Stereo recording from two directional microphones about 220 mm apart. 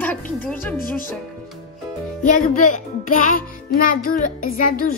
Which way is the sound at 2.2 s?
35° left (ahead or behind).